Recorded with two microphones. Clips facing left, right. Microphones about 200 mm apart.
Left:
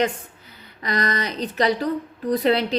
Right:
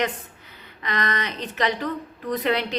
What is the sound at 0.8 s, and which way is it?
A woman's voice, 35° left (ahead or behind).